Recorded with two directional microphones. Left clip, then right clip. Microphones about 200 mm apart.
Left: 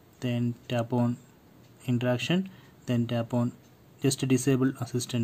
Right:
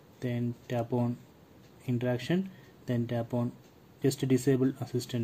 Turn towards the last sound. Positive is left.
turn(degrees=25)  # may be behind; listen again after turning